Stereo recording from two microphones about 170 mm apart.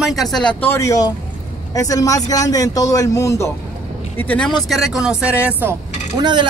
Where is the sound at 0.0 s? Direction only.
Centre (ahead or behind).